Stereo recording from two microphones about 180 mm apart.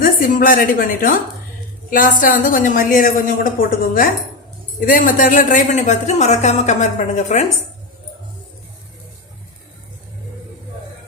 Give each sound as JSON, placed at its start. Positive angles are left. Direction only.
{"t": 0.0, "sound": "a woman's voice", "side_deg": 50}